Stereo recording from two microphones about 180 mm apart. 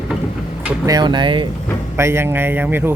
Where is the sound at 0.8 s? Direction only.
25° right (ahead or behind).